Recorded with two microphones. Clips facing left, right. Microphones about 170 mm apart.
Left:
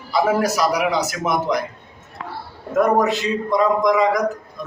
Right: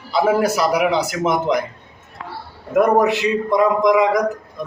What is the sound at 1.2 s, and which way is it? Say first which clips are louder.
Speech: right 4 dB; 25° right (ahead or behind).